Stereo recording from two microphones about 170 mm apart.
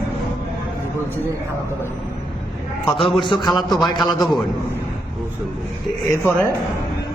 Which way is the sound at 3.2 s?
25° left (ahead or behind).